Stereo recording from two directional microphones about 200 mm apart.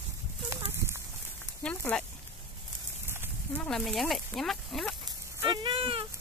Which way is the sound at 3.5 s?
5° left (ahead or behind).